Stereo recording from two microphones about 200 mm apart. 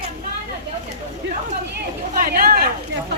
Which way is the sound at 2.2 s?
45° right (ahead or behind).